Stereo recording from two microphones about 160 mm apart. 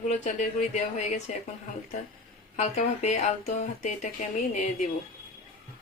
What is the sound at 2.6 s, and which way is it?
Speech, 45° left (ahead or behind).